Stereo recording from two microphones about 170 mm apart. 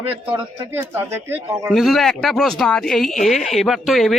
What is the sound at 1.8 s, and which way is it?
Speech, centre (ahead or behind).